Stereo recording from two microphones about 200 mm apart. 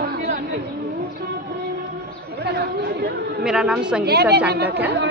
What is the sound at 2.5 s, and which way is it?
Chatter, 60° right (ahead or behind).